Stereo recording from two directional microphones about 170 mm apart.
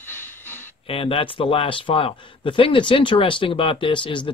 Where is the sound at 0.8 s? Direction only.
35° left (ahead or behind).